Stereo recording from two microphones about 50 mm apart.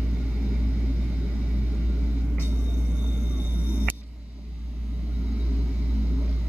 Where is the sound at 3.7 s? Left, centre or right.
Right.